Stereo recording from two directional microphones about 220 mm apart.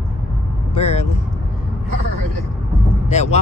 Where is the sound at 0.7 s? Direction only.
30° left (ahead or behind).